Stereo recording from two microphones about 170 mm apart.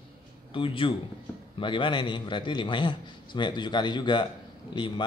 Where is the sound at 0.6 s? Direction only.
30° left (ahead or behind).